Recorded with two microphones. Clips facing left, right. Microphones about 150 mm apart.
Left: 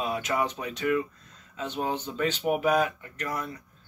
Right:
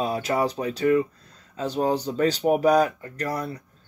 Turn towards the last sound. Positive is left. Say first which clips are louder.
# right 5 dB
turn(degrees=-35)  # may be behind; listen again after turning